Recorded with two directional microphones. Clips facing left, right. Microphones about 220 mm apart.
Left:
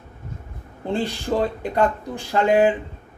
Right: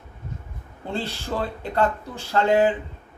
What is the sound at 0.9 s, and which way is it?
A man's voice, 15° left (ahead or behind).